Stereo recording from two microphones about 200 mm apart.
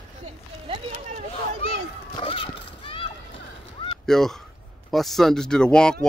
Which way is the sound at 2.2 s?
25° left (ahead or behind).